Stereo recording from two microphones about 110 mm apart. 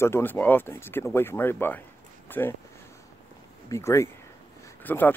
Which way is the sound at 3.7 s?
25° left (ahead or behind).